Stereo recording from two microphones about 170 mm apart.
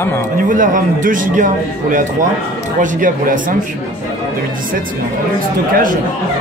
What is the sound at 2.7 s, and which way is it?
Speech, 50° right (ahead or behind).